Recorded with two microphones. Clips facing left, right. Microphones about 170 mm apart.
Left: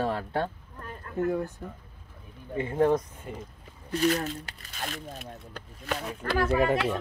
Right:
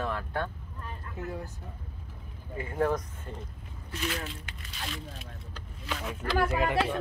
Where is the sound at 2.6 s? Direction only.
25° left (ahead or behind).